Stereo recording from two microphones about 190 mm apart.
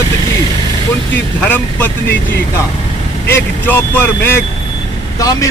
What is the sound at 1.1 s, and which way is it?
Speech, 10° left (ahead or behind).